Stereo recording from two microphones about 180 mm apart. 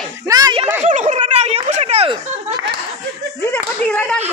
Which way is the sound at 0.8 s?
45° right (ahead or behind).